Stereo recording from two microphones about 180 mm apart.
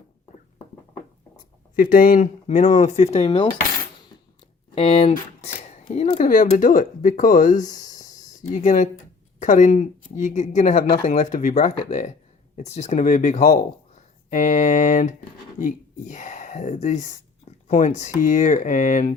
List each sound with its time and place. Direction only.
1.7 s speech: 50° left (ahead or behind); by 3.5 s 30° left (ahead or behind)
4.7 s speech: 30° left (ahead or behind)